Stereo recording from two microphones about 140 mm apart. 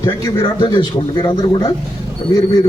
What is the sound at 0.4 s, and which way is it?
A man's voice, 35° left (ahead or behind).